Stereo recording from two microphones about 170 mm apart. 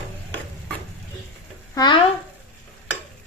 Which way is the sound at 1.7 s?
25° left (ahead or behind).